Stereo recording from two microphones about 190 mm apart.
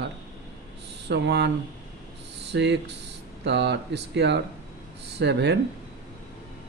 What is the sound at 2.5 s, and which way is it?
Speech, 65° right (ahead or behind).